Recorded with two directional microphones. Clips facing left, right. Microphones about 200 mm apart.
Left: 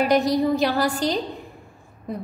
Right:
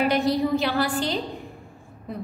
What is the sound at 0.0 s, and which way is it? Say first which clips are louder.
A woman's voice: left 2 dB; 40° left (ahead or behind).